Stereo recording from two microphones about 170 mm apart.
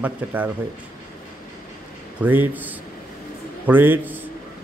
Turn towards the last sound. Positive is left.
turn(degrees=-10)  # may be behind; listen again after turning